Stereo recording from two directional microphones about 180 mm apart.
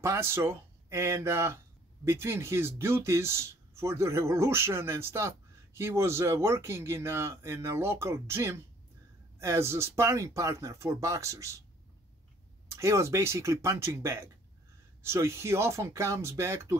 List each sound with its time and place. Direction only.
0.0 s speech: 15° right (ahead or behind)
12.6 s speech: 15° right (ahead or behind)